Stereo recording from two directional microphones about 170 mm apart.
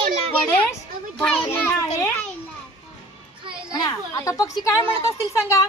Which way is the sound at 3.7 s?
20° left (ahead or behind).